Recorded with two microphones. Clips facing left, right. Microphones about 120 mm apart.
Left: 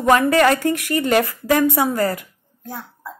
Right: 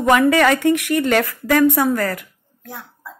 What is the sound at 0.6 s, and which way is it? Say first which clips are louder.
Speech: right 4 dB; 70° right (ahead or behind).